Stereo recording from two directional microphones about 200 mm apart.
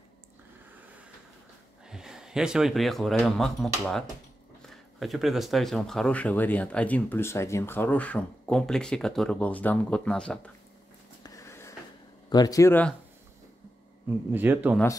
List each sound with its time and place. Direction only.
1.9 s speech: 5° right (ahead or behind)
11.2 s a sound: 15° left (ahead or behind)
12.3 s speech: 20° left (ahead or behind)
14.3 s speech: 10° right (ahead or behind)